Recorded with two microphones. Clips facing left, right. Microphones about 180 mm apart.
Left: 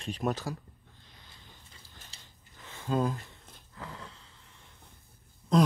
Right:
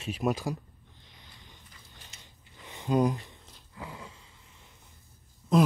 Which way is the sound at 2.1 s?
30° left (ahead or behind).